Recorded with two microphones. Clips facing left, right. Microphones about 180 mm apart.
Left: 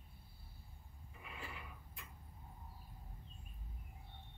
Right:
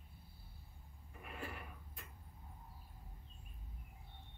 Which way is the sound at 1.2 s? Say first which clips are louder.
Right 4 dB; 50° right (ahead or behind).